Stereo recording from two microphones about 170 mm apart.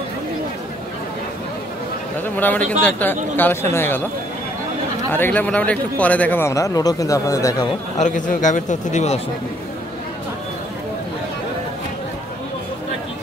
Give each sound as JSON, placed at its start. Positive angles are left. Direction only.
{"t": 2.2, "sound": "speech", "side_deg": 10}
{"t": 5.1, "sound": "speech", "side_deg": 10}
{"t": 8.0, "sound": "speech", "side_deg": 50}